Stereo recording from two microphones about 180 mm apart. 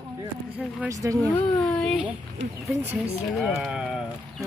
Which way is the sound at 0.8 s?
15° right (ahead or behind).